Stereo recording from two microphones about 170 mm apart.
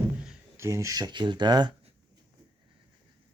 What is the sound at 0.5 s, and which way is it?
Speech, 15° right (ahead or behind).